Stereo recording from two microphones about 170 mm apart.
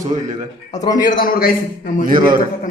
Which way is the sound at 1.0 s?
55° left (ahead or behind).